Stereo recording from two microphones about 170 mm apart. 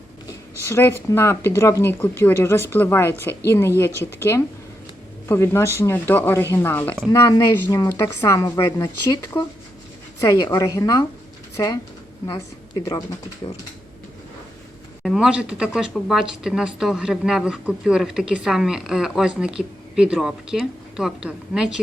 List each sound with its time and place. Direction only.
0.6 s a woman's voice: 15° left (ahead or behind)
15.0 s speech: centre (ahead or behind)